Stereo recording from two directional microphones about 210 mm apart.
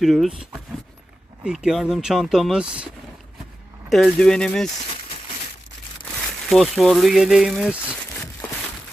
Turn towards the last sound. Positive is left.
turn(degrees=-5)  # may be behind; listen again after turning